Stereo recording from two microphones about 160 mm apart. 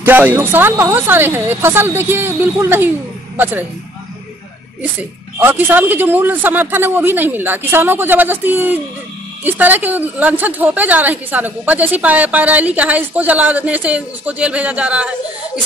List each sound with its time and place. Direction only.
0.0 s a woman's voice: 10° right (ahead or behind)
5.4 s a woman's voice: 10° right (ahead or behind)